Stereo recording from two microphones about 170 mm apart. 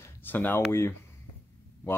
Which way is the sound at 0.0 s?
10° left (ahead or behind).